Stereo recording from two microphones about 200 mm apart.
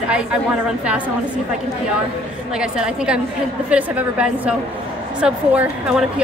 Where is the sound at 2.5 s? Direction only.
5° right (ahead or behind).